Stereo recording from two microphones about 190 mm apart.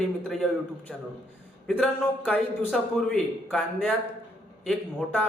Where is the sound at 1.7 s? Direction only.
5° left (ahead or behind).